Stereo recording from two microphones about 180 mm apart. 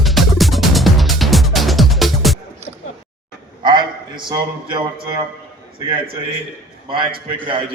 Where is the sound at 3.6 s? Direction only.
25° right (ahead or behind).